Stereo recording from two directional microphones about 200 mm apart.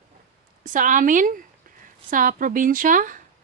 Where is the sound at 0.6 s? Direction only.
40° right (ahead or behind).